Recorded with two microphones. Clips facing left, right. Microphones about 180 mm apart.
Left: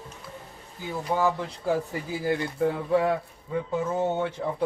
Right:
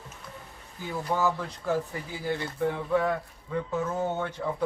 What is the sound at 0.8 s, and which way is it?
A man's voice, 10° left (ahead or behind).